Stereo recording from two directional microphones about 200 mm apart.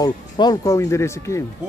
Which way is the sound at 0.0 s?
20° left (ahead or behind).